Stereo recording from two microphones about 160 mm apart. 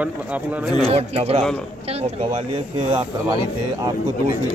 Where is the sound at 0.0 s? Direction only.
10° right (ahead or behind).